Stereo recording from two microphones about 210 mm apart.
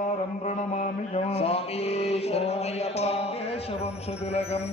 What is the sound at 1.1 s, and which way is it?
Mantra, 30° left (ahead or behind).